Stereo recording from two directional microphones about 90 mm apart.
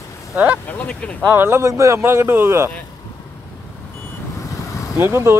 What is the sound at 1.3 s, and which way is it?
A man's voice, 25° right (ahead or behind).